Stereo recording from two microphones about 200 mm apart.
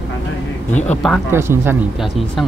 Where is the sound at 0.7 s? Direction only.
35° left (ahead or behind).